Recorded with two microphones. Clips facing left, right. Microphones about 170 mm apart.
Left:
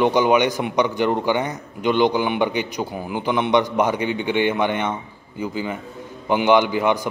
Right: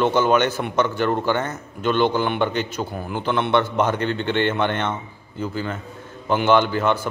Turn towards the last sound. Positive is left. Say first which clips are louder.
# left 1 dB
turn(degrees=15)  # may be behind; listen again after turning